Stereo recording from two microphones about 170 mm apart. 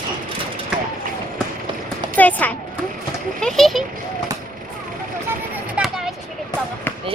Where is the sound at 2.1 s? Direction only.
10° left (ahead or behind).